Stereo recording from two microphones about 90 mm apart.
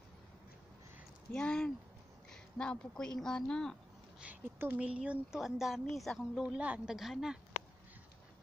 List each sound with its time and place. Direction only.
1.3 s speech: 10° left (ahead or behind)
4.2 s speech: 20° right (ahead or behind); by 6.4 s centre (ahead or behind)
6.4 s speech: 10° right (ahead or behind)